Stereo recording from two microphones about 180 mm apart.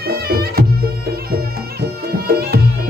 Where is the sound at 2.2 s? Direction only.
60° right (ahead or behind).